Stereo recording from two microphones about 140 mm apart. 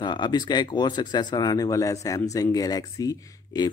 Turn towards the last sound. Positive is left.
turn(degrees=30)  # may be behind; listen again after turning